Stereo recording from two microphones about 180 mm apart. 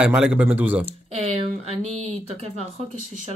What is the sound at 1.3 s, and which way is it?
Speech, 35° right (ahead or behind).